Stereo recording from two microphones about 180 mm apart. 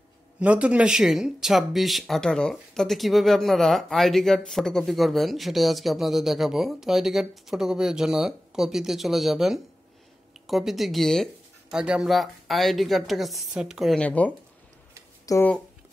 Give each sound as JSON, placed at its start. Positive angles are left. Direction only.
{"t": 0.4, "sound": "speech", "side_deg": -5}